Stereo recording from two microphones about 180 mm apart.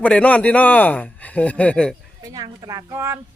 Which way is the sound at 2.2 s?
20° right (ahead or behind).